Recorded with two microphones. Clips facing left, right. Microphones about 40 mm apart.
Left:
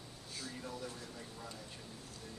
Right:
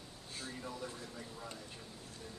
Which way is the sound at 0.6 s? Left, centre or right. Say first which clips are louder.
Right 1 dB; centre.